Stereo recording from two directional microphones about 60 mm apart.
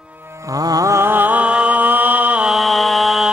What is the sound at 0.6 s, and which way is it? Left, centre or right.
Mantra, right.